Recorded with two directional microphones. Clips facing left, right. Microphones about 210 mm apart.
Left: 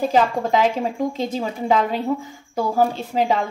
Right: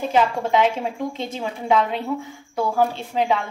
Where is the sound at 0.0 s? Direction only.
35° left (ahead or behind).